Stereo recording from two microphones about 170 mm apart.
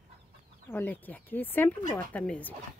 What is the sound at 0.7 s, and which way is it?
Speech, 10° left (ahead or behind).